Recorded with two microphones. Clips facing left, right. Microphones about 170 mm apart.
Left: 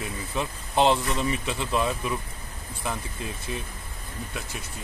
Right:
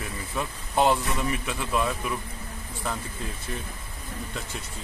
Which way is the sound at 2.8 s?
15° left (ahead or behind).